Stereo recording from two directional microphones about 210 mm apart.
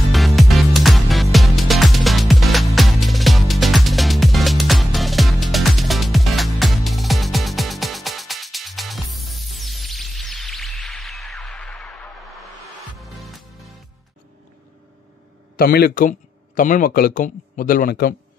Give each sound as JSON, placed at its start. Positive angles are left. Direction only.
{"t": 0.1, "sound": "music", "side_deg": 0}
{"t": 15.5, "sound": "speech", "side_deg": 45}